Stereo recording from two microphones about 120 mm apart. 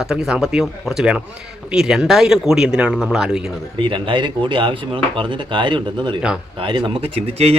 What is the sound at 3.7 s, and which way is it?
Speech, 45° right (ahead or behind).